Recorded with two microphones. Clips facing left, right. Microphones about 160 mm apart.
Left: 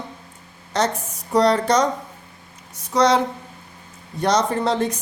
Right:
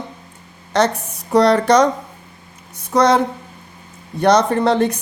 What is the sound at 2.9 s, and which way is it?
Speech, 55° right (ahead or behind).